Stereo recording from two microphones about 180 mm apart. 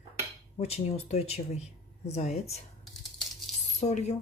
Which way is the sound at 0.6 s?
35° left (ahead or behind).